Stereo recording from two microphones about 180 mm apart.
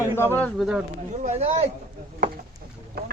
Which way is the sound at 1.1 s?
40° right (ahead or behind).